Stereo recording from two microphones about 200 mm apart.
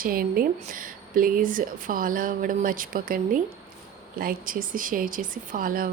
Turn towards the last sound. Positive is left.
turn(degrees=-45)  # may be behind; listen again after turning